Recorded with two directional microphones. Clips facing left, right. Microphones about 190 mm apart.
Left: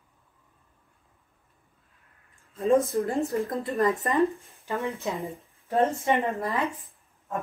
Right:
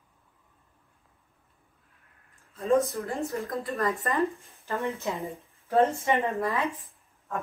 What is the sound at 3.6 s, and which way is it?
Speech, 20° left (ahead or behind).